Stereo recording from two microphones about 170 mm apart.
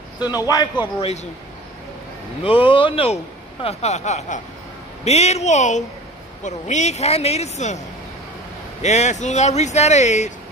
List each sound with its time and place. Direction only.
0.3 s a man's voice: 20° left (ahead or behind)
2.6 s a man's voice: 30° left (ahead or behind)
8.8 s speech: 40° left (ahead or behind)